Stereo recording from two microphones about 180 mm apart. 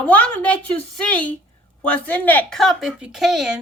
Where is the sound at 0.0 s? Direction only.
10° left (ahead or behind).